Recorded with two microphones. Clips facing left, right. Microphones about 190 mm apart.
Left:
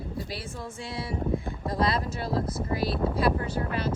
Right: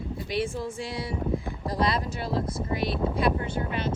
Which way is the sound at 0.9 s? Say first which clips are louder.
Left 3 dB; 30° left (ahead or behind).